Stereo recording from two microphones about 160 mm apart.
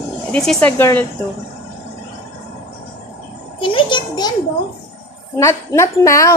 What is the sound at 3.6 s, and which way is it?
Music, 30° left (ahead or behind).